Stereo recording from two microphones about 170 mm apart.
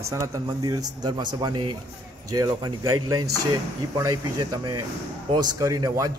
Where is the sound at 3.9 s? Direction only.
25° right (ahead or behind).